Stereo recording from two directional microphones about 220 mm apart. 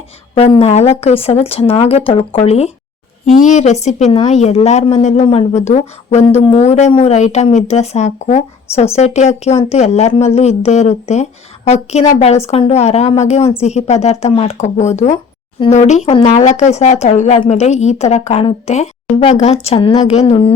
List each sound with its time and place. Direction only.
0.3 s speech: 25° left (ahead or behind)